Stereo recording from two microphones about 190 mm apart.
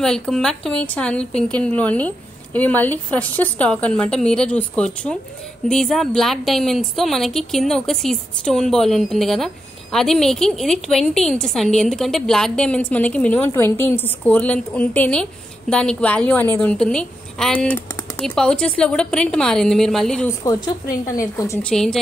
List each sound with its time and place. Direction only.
0.0 s a woman's voice: 5° left (ahead or behind)
20.2 s speech: 20° left (ahead or behind)
21.6 s a woman's voice: 5° left (ahead or behind)